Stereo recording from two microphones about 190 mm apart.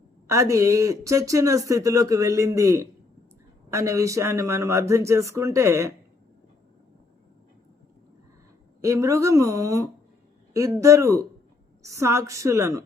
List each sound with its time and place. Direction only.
0.3 s speech: 15° right (ahead or behind)
8.8 s speech: 15° right (ahead or behind)